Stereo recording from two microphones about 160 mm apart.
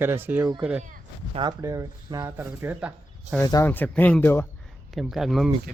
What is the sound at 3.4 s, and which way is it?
Speech, 20° left (ahead or behind).